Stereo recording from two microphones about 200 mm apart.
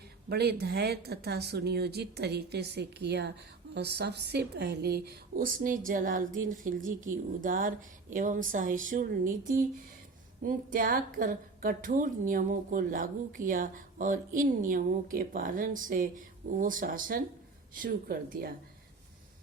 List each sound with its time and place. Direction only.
0.3 s a woman's voice: 55° right (ahead or behind)